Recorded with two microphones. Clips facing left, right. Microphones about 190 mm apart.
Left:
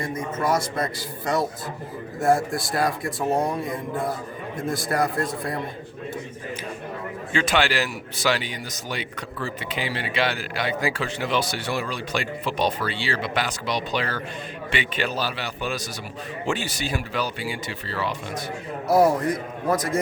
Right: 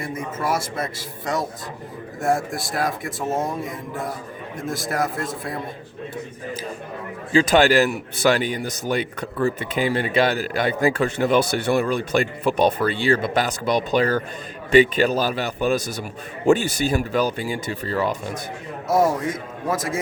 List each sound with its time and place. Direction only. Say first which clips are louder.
0.3 s a man's voice: left 1 dB; 5° right (ahead or behind)
7.3 s a man's voice: right 7 dB; 40° right (ahead or behind)
18.9 s a man's voice: left 1 dB; centre (ahead or behind)